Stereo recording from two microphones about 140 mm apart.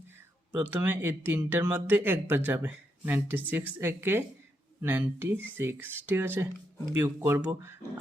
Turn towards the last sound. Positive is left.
turn(degrees=-15)  # may be behind; listen again after turning